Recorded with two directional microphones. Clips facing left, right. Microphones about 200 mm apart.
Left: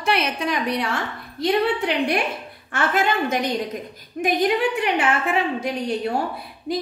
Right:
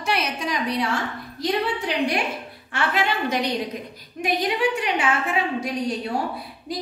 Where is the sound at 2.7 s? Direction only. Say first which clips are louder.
Left 3 dB; 50° left (ahead or behind).